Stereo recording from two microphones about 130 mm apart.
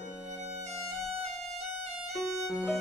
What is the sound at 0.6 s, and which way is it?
Violin, 55° right (ahead or behind).